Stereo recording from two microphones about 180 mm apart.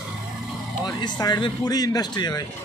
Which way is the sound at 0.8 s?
25° left (ahead or behind).